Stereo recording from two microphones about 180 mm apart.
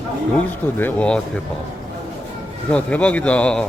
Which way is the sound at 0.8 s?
10° left (ahead or behind).